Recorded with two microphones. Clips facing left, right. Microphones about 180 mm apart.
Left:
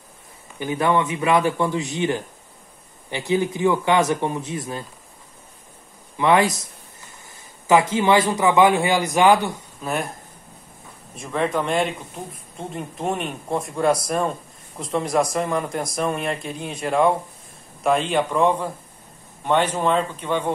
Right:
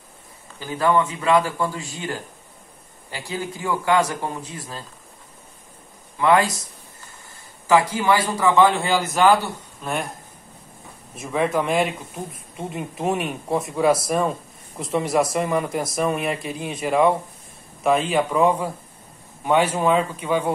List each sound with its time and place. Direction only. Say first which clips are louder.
0.6 s a man's voice: even; 20° left (ahead or behind)
6.1 s a man's voice: even; 20° left (ahead or behind)
9.8 s speech: left 1 dB; centre (ahead or behind)
11.1 s speech: right 1 dB; 5° right (ahead or behind)